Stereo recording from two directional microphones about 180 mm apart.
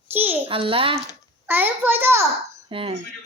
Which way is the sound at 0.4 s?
30° right (ahead or behind).